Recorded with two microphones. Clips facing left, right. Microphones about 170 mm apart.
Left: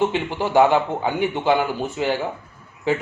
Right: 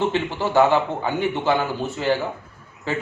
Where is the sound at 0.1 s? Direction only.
15° left (ahead or behind).